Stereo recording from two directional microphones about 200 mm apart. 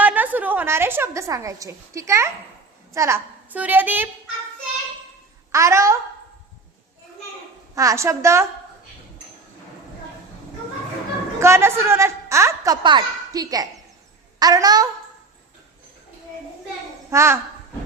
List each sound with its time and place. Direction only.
0.0 s a woman's voice: 10° right (ahead or behind)
5.5 s a woman's voice: 15° right (ahead or behind)
7.8 s a woman's voice: 15° right (ahead or behind)
11.3 s a woman's voice: 15° right (ahead or behind)
17.1 s a woman's voice: 15° right (ahead or behind)